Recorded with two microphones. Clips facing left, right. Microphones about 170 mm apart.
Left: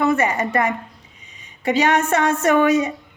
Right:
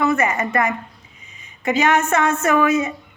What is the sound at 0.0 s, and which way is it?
A woman's voice, 30° left (ahead or behind).